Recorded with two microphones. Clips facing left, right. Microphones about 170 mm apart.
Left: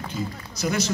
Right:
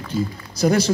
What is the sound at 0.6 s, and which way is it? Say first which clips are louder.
Speech: right 8 dB; 35° right (ahead or behind).